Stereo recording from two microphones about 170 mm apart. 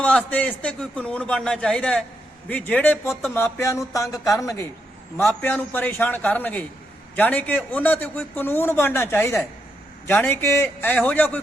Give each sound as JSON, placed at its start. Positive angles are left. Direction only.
{"t": 0.0, "sound": "a man's voice", "side_deg": 10}